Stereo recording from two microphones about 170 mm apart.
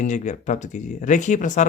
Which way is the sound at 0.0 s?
45° left (ahead or behind).